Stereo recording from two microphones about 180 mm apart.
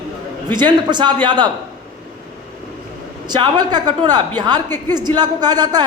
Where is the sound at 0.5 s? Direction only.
25° right (ahead or behind).